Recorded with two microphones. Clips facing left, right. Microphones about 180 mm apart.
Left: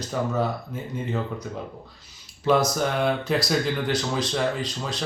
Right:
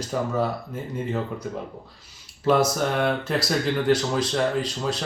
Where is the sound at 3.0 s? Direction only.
5° right (ahead or behind).